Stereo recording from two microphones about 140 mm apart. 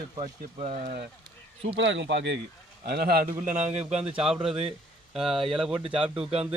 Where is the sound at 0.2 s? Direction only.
55° right (ahead or behind).